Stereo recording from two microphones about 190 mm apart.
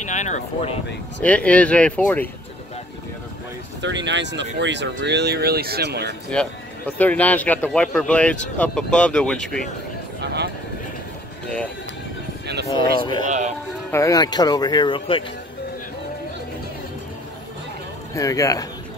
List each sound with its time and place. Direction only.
0.0 s speech: 40° left (ahead or behind)
1.2 s speech: 5° left (ahead or behind)
3.8 s speech: 70° right (ahead or behind)
7.0 s speech: 10° left (ahead or behind)
10.2 s a sound: 60° right (ahead or behind)
11.4 s music: 5° left (ahead or behind)
12.6 s speech: 25° left (ahead or behind)
13.2 s speech: 40° right (ahead or behind)
13.9 s speech: 20° left (ahead or behind)
18.1 s speech: 15° left (ahead or behind)